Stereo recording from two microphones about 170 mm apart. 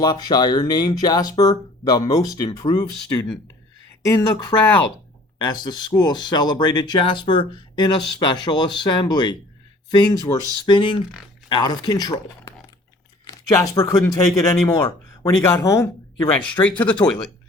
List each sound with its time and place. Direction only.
0.0 s speech: 25° left (ahead or behind); by 17.3 s 5° left (ahead or behind)